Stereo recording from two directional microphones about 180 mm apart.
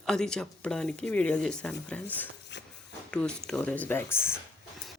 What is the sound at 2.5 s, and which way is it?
Walk, 75° left (ahead or behind).